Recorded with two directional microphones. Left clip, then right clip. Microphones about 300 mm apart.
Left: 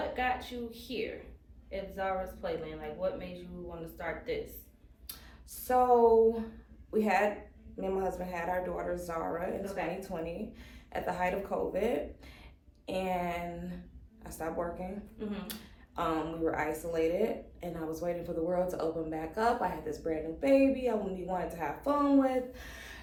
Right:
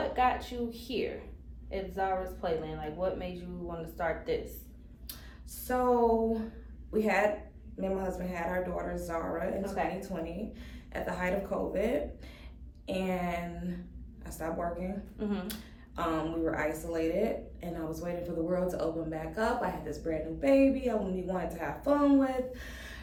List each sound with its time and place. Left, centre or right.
0.2 s speech: centre
5.6 s a woman's voice: centre
15.2 s speech: centre
16.0 s a woman's voice: centre